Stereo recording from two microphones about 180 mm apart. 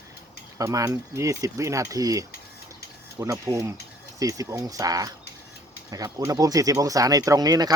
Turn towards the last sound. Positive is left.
turn(degrees=-20)  # may be behind; listen again after turning